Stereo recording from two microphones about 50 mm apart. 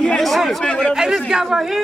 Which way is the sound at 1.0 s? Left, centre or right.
Centre.